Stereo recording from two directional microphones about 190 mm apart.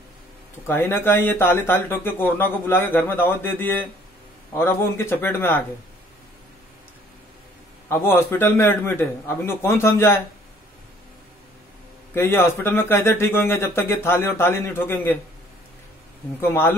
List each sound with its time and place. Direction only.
0.7 s speech: 10° left (ahead or behind)
7.9 s speech: 15° left (ahead or behind)
12.1 s speech: 15° left (ahead or behind)
16.3 s speech: 10° left (ahead or behind)